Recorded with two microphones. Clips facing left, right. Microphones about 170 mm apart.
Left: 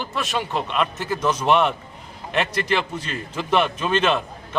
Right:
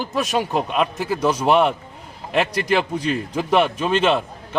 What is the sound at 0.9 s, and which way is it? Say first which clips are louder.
Speech: right 3 dB; 10° right (ahead or behind).